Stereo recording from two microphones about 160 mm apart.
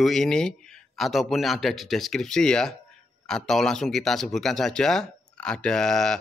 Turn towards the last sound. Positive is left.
turn(degrees=5)  # may be behind; listen again after turning